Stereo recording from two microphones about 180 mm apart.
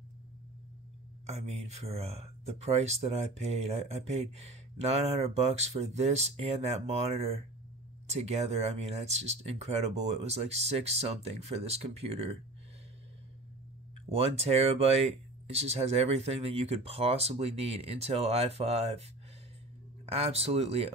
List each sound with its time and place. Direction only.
1.2 s speech: 35° right (ahead or behind)
14.2 s speech: 35° right (ahead or behind)
20.1 s speech: 35° right (ahead or behind)